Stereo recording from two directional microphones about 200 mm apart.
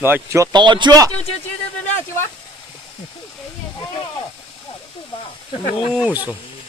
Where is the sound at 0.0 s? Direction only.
10° right (ahead or behind).